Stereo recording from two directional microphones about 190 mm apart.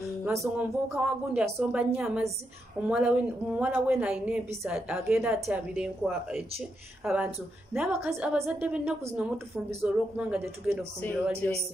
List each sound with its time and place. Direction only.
0.2 s a woman's voice: 10° right (ahead or behind)